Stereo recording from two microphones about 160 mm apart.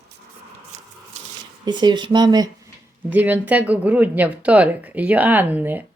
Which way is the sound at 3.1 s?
10° right (ahead or behind).